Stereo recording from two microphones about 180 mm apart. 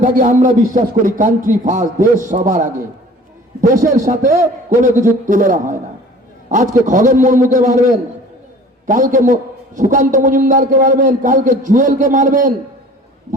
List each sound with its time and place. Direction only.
0.0 s a man's voice: 45° right (ahead or behind)
8.9 s a man's voice: 45° right (ahead or behind)